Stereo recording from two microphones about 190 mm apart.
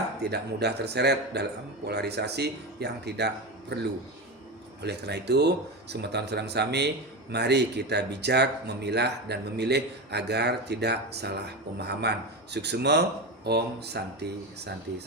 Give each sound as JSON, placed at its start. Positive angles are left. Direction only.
{"t": 0.2, "sound": "speech", "side_deg": -60}
{"t": 4.8, "sound": "speech", "side_deg": -60}